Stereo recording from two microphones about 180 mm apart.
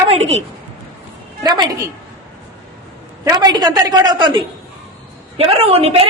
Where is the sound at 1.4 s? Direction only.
20° right (ahead or behind).